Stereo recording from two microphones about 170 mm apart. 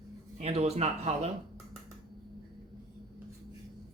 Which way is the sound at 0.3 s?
40° right (ahead or behind).